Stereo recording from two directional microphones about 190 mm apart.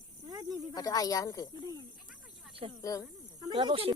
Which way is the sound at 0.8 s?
20° left (ahead or behind).